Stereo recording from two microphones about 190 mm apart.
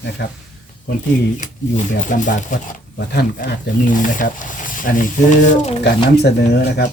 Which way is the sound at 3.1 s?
60° left (ahead or behind).